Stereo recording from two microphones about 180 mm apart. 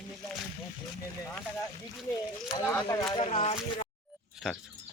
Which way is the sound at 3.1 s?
30° left (ahead or behind).